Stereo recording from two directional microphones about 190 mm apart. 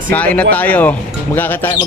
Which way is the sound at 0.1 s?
10° left (ahead or behind).